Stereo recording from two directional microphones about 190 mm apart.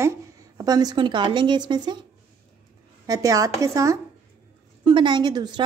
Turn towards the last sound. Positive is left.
turn(degrees=-20)  # may be behind; listen again after turning